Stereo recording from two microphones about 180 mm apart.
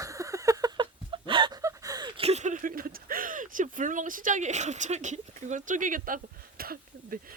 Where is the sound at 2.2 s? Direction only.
40° right (ahead or behind); by 7.1 s 55° right (ahead or behind).